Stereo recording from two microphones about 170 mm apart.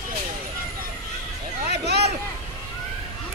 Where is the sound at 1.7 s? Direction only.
75° right (ahead or behind).